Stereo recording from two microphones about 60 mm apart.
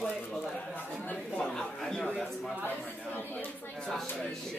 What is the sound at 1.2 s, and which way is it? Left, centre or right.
Speech, left.